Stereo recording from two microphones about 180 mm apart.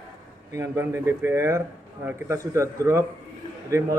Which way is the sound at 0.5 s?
15° right (ahead or behind).